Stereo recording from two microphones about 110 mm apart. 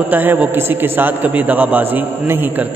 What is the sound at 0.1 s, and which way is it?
A man's voice, 15° right (ahead or behind).